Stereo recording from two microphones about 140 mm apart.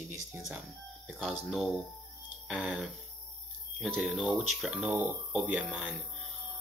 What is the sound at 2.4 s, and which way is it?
Music, 10° right (ahead or behind).